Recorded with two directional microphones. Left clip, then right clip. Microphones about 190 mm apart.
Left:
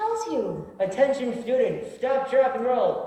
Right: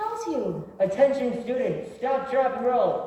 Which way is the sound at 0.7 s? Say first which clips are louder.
Right 1 dB; 40° left (ahead or behind).